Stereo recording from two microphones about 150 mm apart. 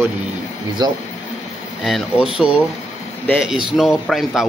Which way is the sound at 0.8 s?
25° right (ahead or behind).